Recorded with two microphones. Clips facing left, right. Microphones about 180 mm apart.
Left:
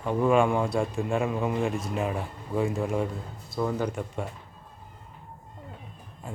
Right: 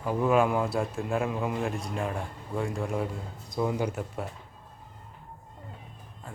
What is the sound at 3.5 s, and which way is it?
Speech, 15° right (ahead or behind).